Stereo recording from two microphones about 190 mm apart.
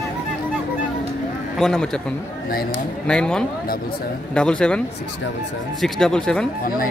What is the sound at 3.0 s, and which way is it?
Speech, 5° left (ahead or behind).